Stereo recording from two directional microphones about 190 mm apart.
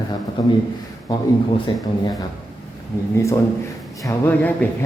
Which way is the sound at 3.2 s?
15° left (ahead or behind).